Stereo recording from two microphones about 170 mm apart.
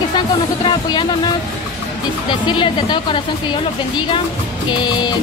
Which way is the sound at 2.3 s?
25° left (ahead or behind).